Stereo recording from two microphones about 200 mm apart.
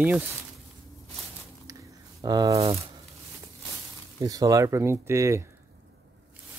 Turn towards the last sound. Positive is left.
turn(degrees=-15)  # may be behind; listen again after turning